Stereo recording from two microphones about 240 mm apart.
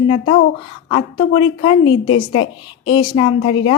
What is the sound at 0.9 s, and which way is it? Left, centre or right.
Speech, left.